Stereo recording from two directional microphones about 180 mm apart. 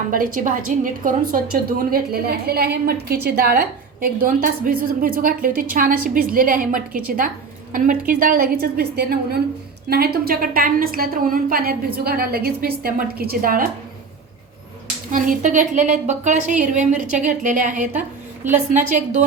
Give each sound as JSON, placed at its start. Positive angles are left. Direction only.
{"t": 0.1, "sound": "a woman's voice", "side_deg": -50}
{"t": 15.1, "sound": "a woman's voice", "side_deg": -45}